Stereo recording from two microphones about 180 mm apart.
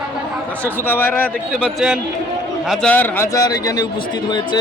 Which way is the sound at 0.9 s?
10° left (ahead or behind).